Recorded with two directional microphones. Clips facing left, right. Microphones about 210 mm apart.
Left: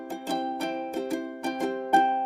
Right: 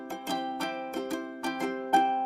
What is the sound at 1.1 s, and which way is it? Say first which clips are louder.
Music: left 3 dB; 15° left (ahead or behind).